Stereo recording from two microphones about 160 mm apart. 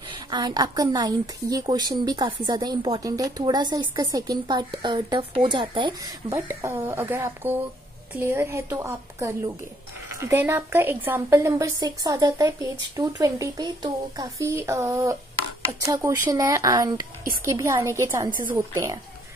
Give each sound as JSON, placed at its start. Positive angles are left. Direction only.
{"t": 0.1, "sound": "speech", "side_deg": -25}
{"t": 6.3, "sound": "a woman's voice", "side_deg": -15}